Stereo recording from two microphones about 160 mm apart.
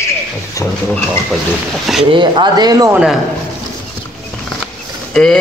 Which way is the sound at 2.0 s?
30° right (ahead or behind).